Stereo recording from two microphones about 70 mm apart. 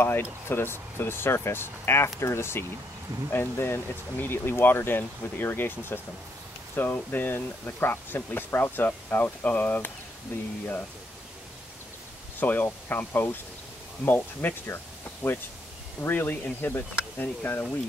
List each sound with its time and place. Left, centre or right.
0.0 s speech: left
12.4 s speech: left